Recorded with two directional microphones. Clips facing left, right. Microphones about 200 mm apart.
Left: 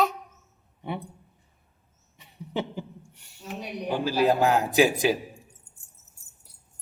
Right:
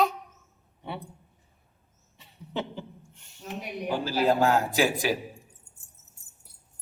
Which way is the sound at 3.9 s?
15° left (ahead or behind).